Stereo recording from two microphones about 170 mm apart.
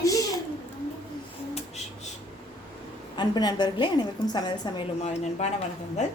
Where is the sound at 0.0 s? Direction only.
20° left (ahead or behind).